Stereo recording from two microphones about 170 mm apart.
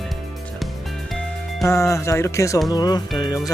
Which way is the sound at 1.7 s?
15° left (ahead or behind).